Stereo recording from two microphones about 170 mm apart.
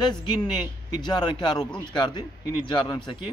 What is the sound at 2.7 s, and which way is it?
Speech, 25° left (ahead or behind).